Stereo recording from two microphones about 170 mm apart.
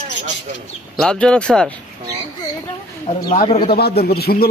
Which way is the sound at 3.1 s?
35° left (ahead or behind).